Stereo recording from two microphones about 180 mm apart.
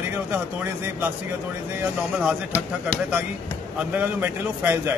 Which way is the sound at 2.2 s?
5° right (ahead or behind).